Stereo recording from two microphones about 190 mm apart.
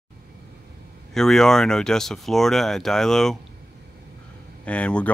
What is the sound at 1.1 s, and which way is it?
Speech, centre (ahead or behind).